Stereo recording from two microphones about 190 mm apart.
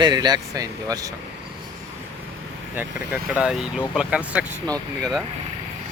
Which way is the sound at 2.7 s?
10° right (ahead or behind).